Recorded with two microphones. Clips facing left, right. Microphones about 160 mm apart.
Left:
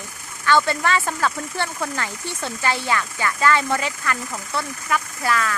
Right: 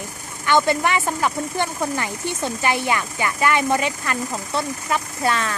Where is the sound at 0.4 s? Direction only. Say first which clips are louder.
Right 1 dB; 15° right (ahead or behind).